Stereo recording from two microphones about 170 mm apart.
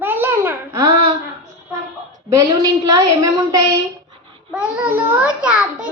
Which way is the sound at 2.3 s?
20° right (ahead or behind).